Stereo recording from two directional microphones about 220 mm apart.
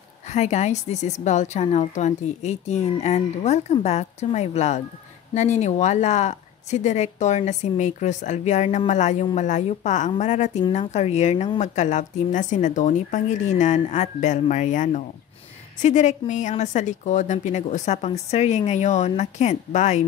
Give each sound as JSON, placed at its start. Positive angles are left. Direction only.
{"t": 0.3, "sound": "speech", "side_deg": 30}